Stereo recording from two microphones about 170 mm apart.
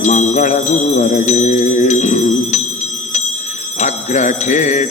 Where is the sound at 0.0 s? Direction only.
45° left (ahead or behind).